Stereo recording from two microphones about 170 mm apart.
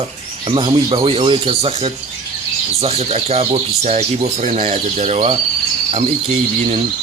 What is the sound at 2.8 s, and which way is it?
Speech, 35° right (ahead or behind).